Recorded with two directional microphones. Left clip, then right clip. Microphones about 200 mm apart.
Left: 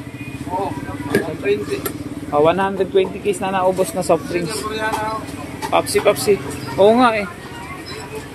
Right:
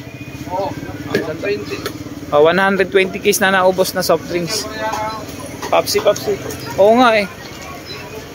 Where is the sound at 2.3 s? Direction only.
20° right (ahead or behind).